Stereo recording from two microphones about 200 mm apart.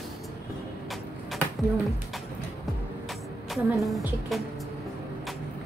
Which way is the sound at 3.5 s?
Centre (ahead or behind).